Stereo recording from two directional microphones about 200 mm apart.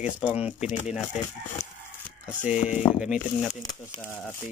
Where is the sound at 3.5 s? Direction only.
20° left (ahead or behind).